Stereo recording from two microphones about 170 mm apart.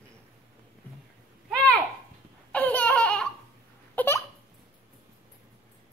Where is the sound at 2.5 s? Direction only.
10° left (ahead or behind).